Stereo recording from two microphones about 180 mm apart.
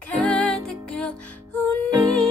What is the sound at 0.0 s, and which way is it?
Music, 5° left (ahead or behind).